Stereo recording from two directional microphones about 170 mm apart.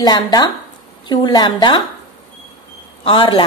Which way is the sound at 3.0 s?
30° left (ahead or behind).